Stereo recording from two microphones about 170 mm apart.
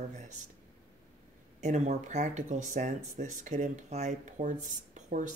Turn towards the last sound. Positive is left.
turn(degrees=-45)  # may be behind; listen again after turning